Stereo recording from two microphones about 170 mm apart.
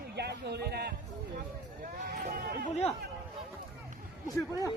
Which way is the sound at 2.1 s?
65° right (ahead or behind).